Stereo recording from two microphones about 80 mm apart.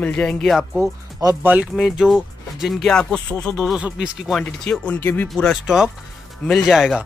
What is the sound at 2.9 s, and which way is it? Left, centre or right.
Speech, centre.